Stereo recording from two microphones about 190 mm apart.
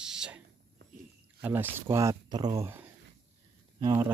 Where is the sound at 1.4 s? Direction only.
10° right (ahead or behind).